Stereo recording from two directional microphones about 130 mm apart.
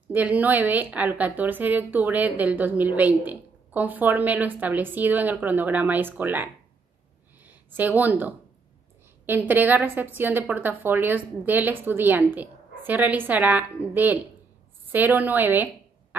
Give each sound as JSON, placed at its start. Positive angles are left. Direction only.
{"t": 0.1, "sound": "a woman's voice", "side_deg": -10}